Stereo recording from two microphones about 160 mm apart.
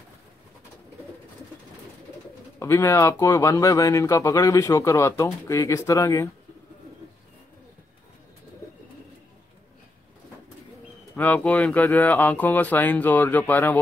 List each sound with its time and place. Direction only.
2.6 s speech: 20° left (ahead or behind)
11.1 s speech: 10° left (ahead or behind)